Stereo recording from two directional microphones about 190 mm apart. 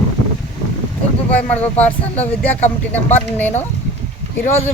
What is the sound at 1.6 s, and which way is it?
Speech, 10° left (ahead or behind).